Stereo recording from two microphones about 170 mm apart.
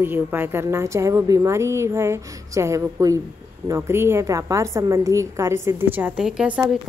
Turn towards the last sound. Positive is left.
turn(degrees=-5)  # may be behind; listen again after turning